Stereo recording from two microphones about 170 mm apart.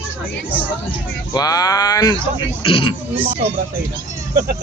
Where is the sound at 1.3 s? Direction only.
20° left (ahead or behind).